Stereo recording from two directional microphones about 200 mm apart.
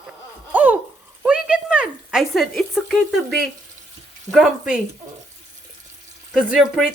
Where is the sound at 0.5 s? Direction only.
10° right (ahead or behind).